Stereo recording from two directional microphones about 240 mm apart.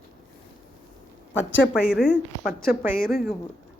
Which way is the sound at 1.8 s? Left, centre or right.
Centre.